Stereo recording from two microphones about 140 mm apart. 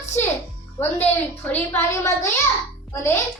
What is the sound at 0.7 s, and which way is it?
A child's voice, 10° left (ahead or behind).